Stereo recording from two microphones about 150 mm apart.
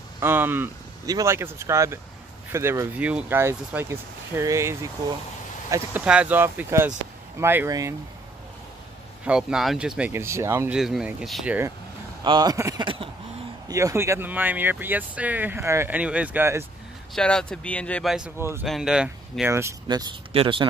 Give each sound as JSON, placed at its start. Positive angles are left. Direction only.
{"t": 0.2, "sound": "speech", "side_deg": -15}
{"t": 6.0, "sound": "speech", "side_deg": -10}
{"t": 9.2, "sound": "speech", "side_deg": -5}
{"t": 10.7, "sound": "speech", "side_deg": -5}
{"t": 12.2, "sound": "speech", "side_deg": -25}
{"t": 17.1, "sound": "speech", "side_deg": 5}
{"t": 18.6, "sound": "speech", "side_deg": -5}
{"t": 19.5, "sound": "speech", "side_deg": -20}
{"t": 20.3, "sound": "speech", "side_deg": -35}